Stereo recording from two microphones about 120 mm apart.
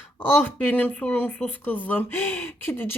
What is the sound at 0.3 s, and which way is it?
Speech, 10° left (ahead or behind).